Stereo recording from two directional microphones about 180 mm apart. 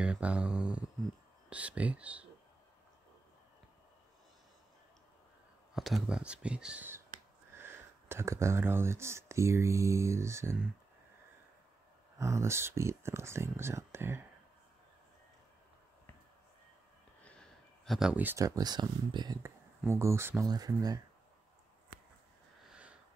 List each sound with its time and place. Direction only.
0.0 s speech: 5° right (ahead or behind)
5.8 s speech: centre (ahead or behind)
12.2 s speech: 15° right (ahead or behind)
17.2 s speech: 5° left (ahead or behind); by 21.0 s 20° right (ahead or behind)
22.7 s sniff: 5° right (ahead or behind)